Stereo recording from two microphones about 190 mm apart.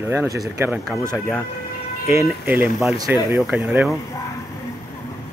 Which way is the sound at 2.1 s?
10° right (ahead or behind).